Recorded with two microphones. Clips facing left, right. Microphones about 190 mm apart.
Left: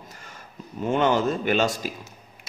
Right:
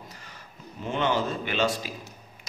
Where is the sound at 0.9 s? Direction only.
45° left (ahead or behind).